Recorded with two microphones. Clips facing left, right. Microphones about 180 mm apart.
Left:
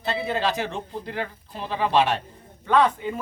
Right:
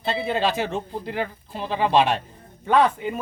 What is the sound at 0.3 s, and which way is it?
Speech, 20° right (ahead or behind).